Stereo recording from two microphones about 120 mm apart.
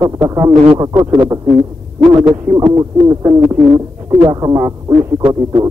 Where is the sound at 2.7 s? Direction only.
30° right (ahead or behind).